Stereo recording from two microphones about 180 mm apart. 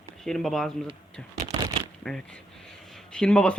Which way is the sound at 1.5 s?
20° right (ahead or behind).